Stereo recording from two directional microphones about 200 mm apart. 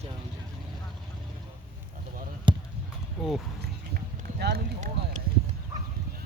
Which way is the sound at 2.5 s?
25° right (ahead or behind).